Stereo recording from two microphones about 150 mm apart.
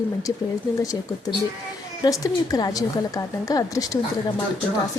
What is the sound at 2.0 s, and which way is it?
A woman's voice, 25° left (ahead or behind).